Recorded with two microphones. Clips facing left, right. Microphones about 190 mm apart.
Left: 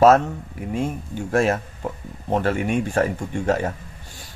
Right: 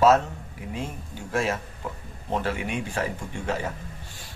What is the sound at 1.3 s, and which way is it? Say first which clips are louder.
Speech: left 7 dB; 50° left (ahead or behind).